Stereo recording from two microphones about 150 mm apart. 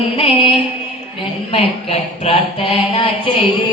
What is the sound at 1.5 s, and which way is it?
Mantra, 40° left (ahead or behind).